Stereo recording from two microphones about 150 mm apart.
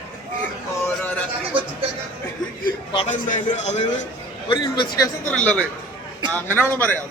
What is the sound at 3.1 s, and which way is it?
Speech, 55° left (ahead or behind).